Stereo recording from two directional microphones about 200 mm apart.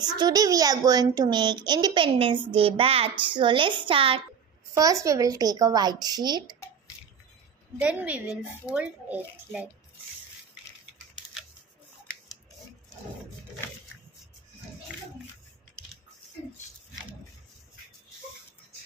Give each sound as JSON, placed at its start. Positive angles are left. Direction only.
{"t": 0.0, "sound": "a child's voice", "side_deg": -20}
{"t": 4.7, "sound": "a child's voice", "side_deg": -15}
{"t": 7.8, "sound": "a woman's voice", "side_deg": -5}